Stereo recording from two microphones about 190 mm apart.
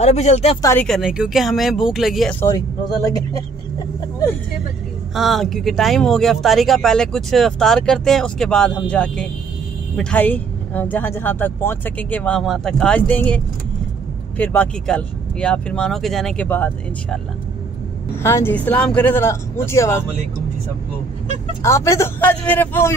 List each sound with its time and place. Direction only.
0.0 s speech: 35° left (ahead or behind)
0.6 s speech: 15° left (ahead or behind)
0.8 s speech: centre (ahead or behind)
2.4 s speech: 20° left (ahead or behind)
5.1 s speech: centre (ahead or behind)
18.2 s speech: 10° left (ahead or behind)
21.6 s speech: 15° left (ahead or behind)